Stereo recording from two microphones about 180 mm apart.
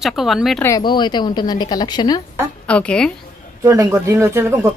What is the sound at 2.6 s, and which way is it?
Speech, 5° left (ahead or behind).